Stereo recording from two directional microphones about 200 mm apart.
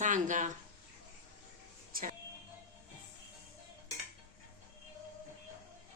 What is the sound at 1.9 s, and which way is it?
Speech, 45° right (ahead or behind).